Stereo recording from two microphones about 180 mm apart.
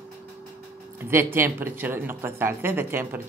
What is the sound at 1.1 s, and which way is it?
Speech, 15° right (ahead or behind).